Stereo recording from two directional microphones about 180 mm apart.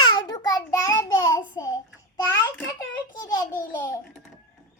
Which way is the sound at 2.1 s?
15° left (ahead or behind).